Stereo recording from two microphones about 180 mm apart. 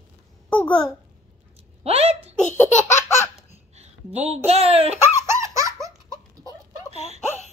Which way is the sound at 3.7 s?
35° right (ahead or behind).